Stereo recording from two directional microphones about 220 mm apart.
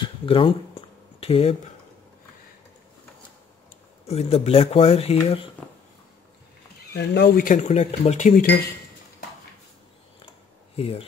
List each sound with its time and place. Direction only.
0.0 s a sound: 25° left (ahead or behind)
4.1 s speech: 25° left (ahead or behind)
6.9 s speech: 45° left (ahead or behind)
10.8 s speech: 25° left (ahead or behind)